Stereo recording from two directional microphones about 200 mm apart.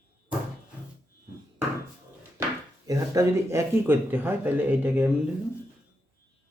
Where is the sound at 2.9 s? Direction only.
15° right (ahead or behind).